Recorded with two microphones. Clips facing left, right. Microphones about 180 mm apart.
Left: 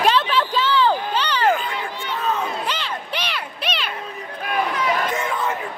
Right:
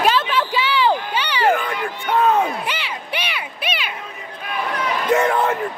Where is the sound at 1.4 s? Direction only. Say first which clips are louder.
Right 4 dB; 60° right (ahead or behind).